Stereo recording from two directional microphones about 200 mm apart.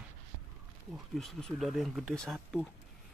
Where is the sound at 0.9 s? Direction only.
Centre (ahead or behind).